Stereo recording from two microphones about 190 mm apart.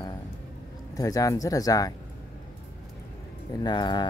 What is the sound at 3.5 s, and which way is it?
Speech, 20° left (ahead or behind).